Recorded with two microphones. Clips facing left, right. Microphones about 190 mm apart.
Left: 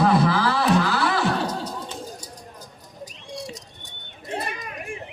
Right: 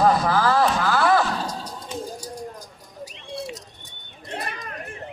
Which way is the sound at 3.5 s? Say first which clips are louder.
Right 1 dB; centre (ahead or behind).